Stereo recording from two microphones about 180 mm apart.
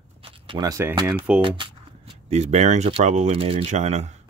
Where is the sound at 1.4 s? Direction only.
30° right (ahead or behind).